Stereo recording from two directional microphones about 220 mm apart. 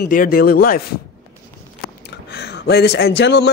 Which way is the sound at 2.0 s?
50° left (ahead or behind).